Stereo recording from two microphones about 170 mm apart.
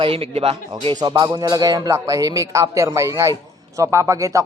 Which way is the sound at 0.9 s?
25° right (ahead or behind).